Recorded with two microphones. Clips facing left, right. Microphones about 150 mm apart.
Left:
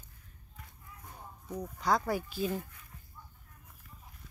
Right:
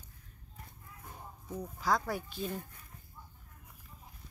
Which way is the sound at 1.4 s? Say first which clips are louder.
Left 2 dB; 10° left (ahead or behind).